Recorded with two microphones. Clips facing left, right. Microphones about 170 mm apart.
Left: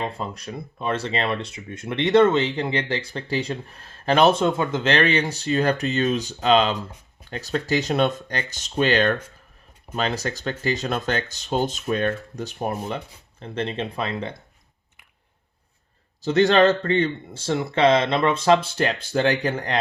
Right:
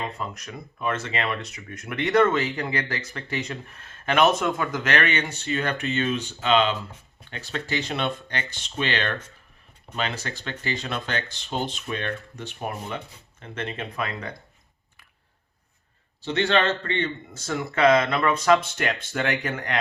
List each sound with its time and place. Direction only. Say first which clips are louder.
0.0 s speech: left 3 dB; 30° left (ahead or behind)
16.2 s speech: left 6 dB; 40° left (ahead or behind)